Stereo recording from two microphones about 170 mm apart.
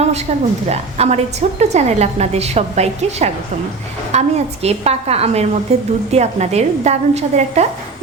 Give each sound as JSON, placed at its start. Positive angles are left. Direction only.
{"t": 0.7, "sound": "a woman's voice", "side_deg": -40}